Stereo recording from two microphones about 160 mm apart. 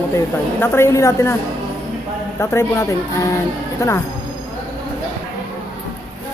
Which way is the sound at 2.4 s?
15° left (ahead or behind).